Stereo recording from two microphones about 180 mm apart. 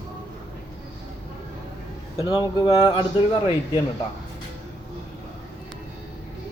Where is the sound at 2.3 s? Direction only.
20° left (ahead or behind).